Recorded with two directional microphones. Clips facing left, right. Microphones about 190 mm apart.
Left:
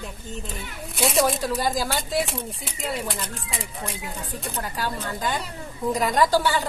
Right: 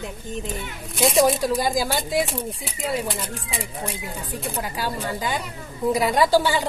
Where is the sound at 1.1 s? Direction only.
Centre (ahead or behind).